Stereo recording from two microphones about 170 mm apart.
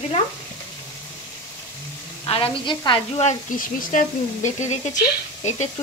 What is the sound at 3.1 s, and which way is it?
Speech, 50° left (ahead or behind).